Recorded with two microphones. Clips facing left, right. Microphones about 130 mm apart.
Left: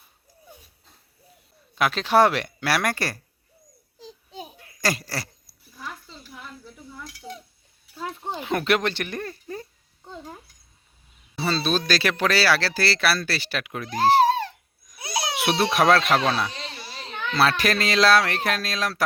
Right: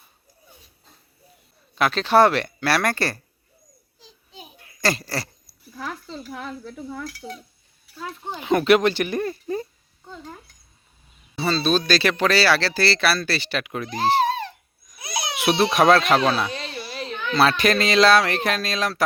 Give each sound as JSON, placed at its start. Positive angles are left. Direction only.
{"t": 1.7, "sound": "speech", "side_deg": 10}
{"t": 4.0, "sound": "a sound", "side_deg": 40}
{"t": 4.8, "sound": "speech", "side_deg": 5}
{"t": 5.7, "sound": "a sound", "side_deg": -90}
{"t": 6.3, "sound": "dishes", "side_deg": -90}
{"t": 7.9, "sound": "a child's voice", "side_deg": 30}
{"t": 8.4, "sound": "speech", "side_deg": 0}
{"t": 11.3, "sound": "speech", "side_deg": 5}
{"t": 15.4, "sound": "speech", "side_deg": 0}